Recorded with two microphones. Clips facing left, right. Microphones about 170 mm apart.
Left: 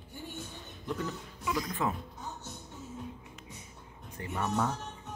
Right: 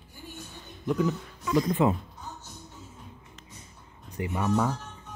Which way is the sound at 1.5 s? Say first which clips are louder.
Right 11 dB; 25° right (ahead or behind).